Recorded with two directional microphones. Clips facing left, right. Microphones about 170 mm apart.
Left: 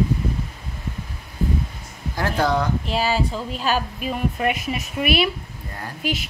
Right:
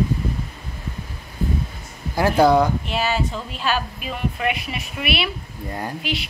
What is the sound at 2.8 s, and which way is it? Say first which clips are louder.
A woman's voice: left 1 dB; 35° left (ahead or behind).